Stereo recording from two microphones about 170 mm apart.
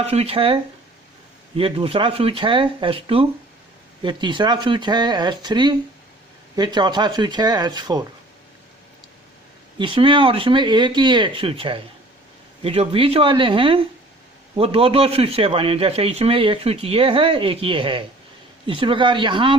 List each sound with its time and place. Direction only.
0.0 s speech: 35° right (ahead or behind)
9.7 s speech: 30° right (ahead or behind)